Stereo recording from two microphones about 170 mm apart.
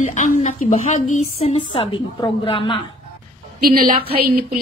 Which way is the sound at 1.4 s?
35° left (ahead or behind).